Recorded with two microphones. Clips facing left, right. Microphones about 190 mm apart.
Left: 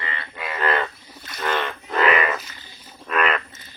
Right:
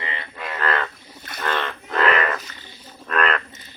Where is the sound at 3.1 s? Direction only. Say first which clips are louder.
Even; 5° left (ahead or behind).